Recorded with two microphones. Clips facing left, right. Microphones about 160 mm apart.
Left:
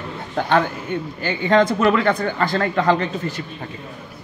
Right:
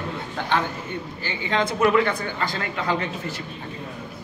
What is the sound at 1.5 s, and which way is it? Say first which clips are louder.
A man's voice: left 4 dB; 50° left (ahead or behind).